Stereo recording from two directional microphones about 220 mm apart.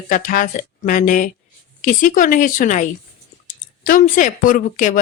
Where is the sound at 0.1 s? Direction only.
35° left (ahead or behind).